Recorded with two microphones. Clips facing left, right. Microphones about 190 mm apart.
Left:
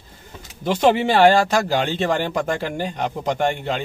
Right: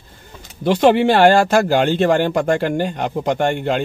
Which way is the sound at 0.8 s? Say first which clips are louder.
Right 2 dB; 55° right (ahead or behind).